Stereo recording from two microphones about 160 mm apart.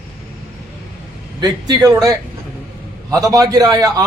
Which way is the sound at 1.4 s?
25° right (ahead or behind).